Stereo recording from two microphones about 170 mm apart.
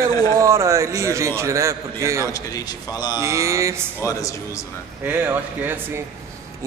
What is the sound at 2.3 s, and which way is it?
Speech, 20° left (ahead or behind).